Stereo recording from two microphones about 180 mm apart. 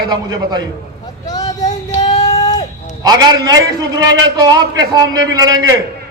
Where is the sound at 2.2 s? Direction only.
20° left (ahead or behind).